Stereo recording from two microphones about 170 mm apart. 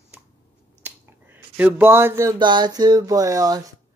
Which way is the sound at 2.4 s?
25° right (ahead or behind).